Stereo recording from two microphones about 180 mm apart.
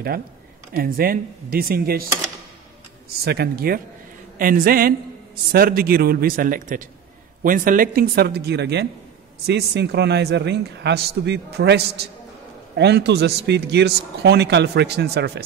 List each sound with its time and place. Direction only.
0.7 s speech: 55° right (ahead or behind)
3.3 s a man's voice: 60° right (ahead or behind)